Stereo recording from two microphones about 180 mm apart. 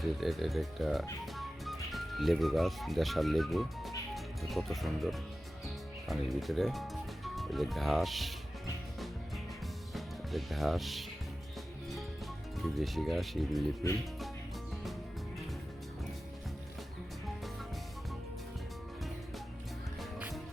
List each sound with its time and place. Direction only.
0.0 s speech: centre (ahead or behind)
9.9 s music: centre (ahead or behind)
12.5 s speech: centre (ahead or behind)
20.0 s music: 5° right (ahead or behind)